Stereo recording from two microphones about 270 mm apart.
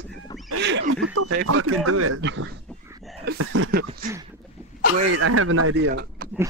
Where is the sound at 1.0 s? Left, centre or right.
Right.